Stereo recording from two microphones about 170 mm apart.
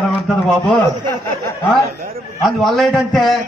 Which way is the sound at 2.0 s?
60° right (ahead or behind).